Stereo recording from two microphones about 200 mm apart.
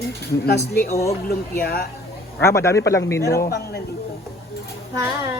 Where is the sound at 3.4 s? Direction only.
55° left (ahead or behind).